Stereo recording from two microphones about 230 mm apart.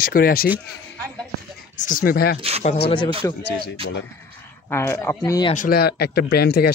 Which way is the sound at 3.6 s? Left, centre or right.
Left.